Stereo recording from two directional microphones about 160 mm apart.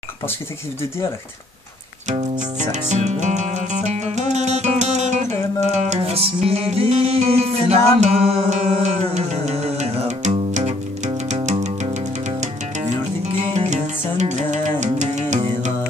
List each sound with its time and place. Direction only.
2.7 s music: 45° right (ahead or behind)
11.4 s music: 45° right (ahead or behind)
13.7 s music: 45° right (ahead or behind)